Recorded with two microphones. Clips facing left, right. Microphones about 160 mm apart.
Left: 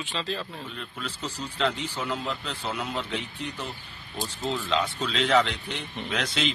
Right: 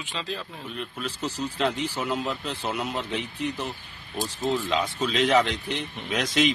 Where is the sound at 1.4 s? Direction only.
10° right (ahead or behind).